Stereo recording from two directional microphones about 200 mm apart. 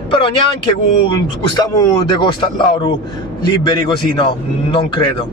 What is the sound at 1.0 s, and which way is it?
Speech, 20° left (ahead or behind).